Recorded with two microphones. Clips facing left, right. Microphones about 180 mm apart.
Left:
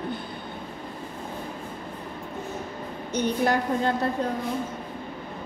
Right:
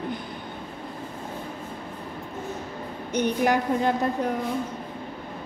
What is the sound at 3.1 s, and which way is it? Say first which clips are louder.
Speech: right 1 dB; 15° right (ahead or behind).